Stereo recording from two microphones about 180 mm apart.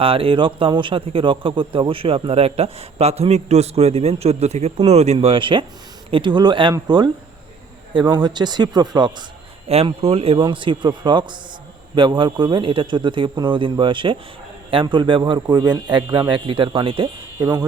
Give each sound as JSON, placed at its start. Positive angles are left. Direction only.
{"t": 0.0, "sound": "a man's voice", "side_deg": -30}
{"t": 9.6, "sound": "a man's voice", "side_deg": -35}